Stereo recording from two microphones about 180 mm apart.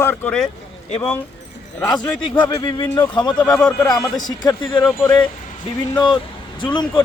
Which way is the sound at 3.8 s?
20° left (ahead or behind).